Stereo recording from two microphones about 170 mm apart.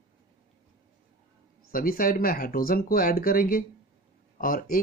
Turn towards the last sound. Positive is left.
turn(degrees=55)  # may be behind; listen again after turning